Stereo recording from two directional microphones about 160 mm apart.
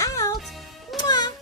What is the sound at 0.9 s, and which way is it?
Music, centre (ahead or behind).